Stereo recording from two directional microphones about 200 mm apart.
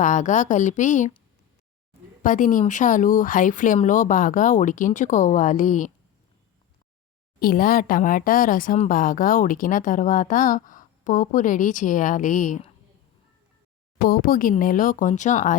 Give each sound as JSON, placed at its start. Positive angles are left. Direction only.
{"t": 0.0, "sound": "speech", "side_deg": 40}
{"t": 2.2, "sound": "speech", "side_deg": 40}
{"t": 7.3, "sound": "speech", "side_deg": 45}
{"t": 14.0, "sound": "speech", "side_deg": 45}